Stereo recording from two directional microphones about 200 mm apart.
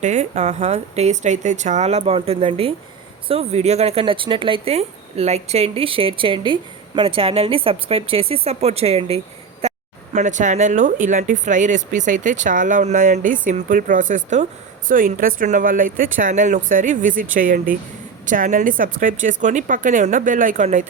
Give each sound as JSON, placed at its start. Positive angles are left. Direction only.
{"t": 0.0, "sound": "speech", "side_deg": -35}